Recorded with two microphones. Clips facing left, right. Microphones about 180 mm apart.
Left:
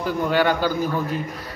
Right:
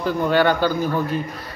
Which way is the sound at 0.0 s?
10° left (ahead or behind).